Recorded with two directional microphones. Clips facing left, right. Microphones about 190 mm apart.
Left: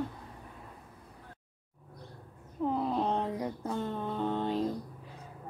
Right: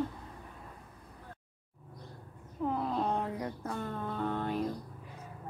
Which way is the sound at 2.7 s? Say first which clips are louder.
Left 2 dB; 15° left (ahead or behind).